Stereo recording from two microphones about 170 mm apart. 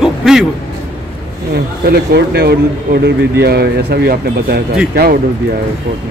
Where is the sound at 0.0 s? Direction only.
5° right (ahead or behind).